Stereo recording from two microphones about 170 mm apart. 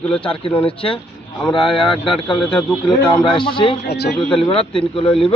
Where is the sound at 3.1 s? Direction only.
25° left (ahead or behind).